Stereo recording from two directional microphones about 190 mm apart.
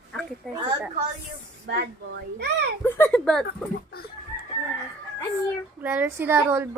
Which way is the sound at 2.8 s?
10° left (ahead or behind).